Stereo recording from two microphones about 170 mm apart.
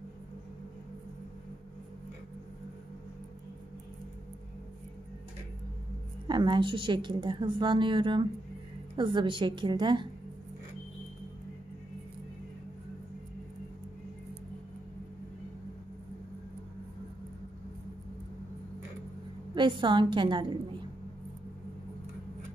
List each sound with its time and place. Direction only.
6.2 s a woman's voice: 25° right (ahead or behind)
19.5 s a woman's voice: 30° right (ahead or behind)